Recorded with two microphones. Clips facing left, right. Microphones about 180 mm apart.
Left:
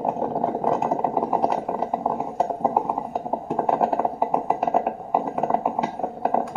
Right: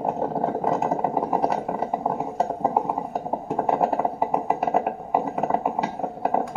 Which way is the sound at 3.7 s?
Centre (ahead or behind).